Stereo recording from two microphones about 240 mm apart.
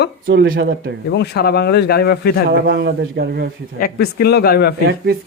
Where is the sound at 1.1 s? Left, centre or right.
Left.